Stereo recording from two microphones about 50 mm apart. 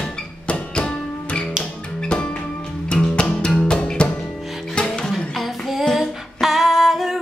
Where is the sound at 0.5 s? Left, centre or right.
Centre.